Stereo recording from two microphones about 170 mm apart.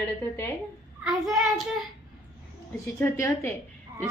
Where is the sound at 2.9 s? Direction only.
15° left (ahead or behind).